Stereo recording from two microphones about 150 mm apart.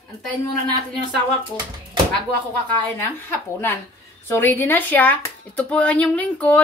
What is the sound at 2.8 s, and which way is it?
Speech, 15° left (ahead or behind).